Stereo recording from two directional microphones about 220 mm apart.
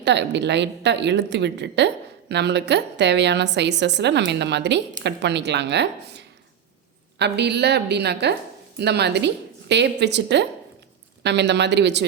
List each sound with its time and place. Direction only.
0.0 s a woman's voice: 50° right (ahead or behind)